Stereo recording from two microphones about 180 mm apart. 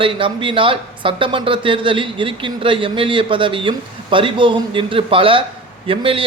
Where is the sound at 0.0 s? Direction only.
30° right (ahead or behind).